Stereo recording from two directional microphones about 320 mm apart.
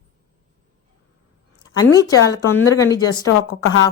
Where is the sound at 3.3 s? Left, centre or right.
Left.